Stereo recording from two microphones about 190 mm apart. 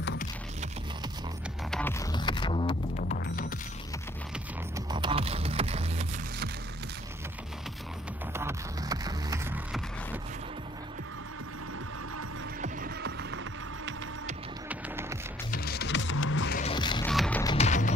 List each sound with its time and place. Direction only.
1.7 s music: 10° left (ahead or behind)
2.1 s a sound: 25° left (ahead or behind)
3.0 s music: 45° left (ahead or behind)
4.7 s music: 25° right (ahead or behind)
8.3 s music: 15° right (ahead or behind)
9.7 s music: centre (ahead or behind)
12.6 s music: 55° right (ahead or behind); by 13.9 s 75° right (ahead or behind)
14.7 s music: 15° right (ahead or behind)
15.5 s music: 55° left (ahead or behind); by 16.5 s 85° left
16.6 s music: 25° left (ahead or behind)
17.0 s music: 5° left (ahead or behind)
17.6 s music: 40° left (ahead or behind)